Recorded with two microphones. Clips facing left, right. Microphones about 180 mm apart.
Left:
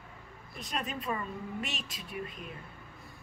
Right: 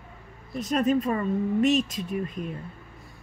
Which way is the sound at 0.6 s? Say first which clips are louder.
Right 14 dB; 45° right (ahead or behind).